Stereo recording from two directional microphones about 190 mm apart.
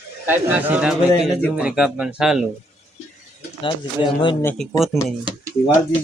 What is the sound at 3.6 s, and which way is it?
Speech, 25° left (ahead or behind).